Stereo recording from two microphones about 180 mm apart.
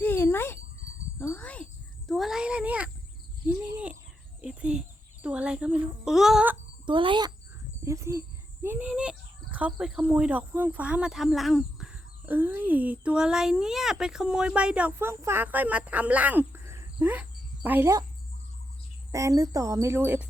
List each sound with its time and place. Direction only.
0.0 s dog: 10° left (ahead or behind)
1.2 s wind chime: 10° left (ahead or behind)
2.0 s a sound: centre (ahead or behind)
3.4 s cricket: 10° right (ahead or behind)
4.4 s a sound: 5° right (ahead or behind)
6.1 s music: centre (ahead or behind)
6.8 s a sound: 25° right (ahead or behind)
8.6 s speech: 10° right (ahead or behind)
19.1 s speech: 15° right (ahead or behind)